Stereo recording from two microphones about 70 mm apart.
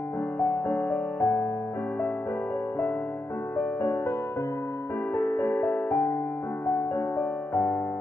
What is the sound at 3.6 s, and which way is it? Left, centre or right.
Music, left.